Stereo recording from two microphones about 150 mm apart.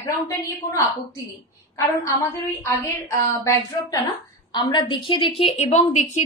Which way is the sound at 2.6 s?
20° left (ahead or behind).